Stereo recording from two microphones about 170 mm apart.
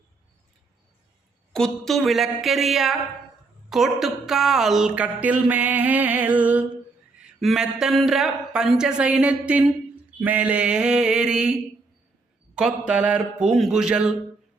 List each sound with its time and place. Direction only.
1.5 s a woman's voice: centre (ahead or behind)
12.5 s speech: 5° right (ahead or behind)